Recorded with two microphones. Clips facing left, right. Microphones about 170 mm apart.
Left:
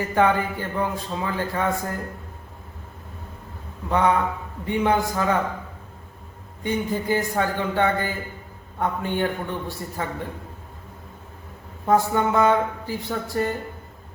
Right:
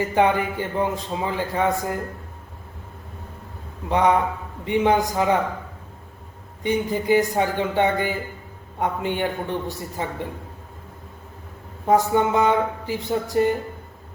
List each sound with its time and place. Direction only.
0.1 s a man's voice: 20° right (ahead or behind)
3.8 s a man's voice: 20° right (ahead or behind)
6.6 s a man's voice: 20° right (ahead or behind)
11.9 s a man's voice: 20° right (ahead or behind)